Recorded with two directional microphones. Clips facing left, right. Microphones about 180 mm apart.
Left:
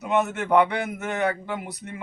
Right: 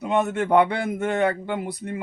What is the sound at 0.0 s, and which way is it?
A man's voice, 30° right (ahead or behind).